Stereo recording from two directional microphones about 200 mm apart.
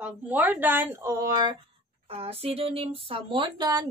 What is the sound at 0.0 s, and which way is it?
Speech, 10° right (ahead or behind).